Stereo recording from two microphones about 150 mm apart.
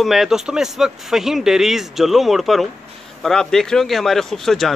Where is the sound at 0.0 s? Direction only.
Centre (ahead or behind).